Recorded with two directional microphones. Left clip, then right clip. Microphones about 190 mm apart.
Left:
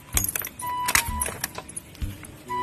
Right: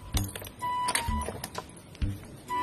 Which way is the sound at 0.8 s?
5° right (ahead or behind).